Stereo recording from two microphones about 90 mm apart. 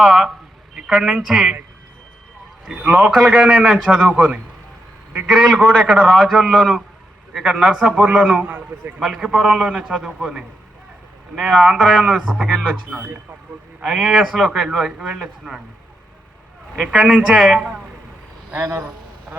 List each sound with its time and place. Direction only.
0.0 s a man's voice: centre (ahead or behind)
2.6 s a man's voice: 10° right (ahead or behind)
5.3 s a man's voice: 10° right (ahead or behind)
7.3 s a man's voice: 10° right (ahead or behind)
16.7 s a man's voice: 5° right (ahead or behind)
18.5 s a man's voice: 30° right (ahead or behind)